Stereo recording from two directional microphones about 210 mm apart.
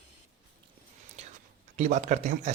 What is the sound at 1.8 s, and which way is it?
Speech, 35° right (ahead or behind).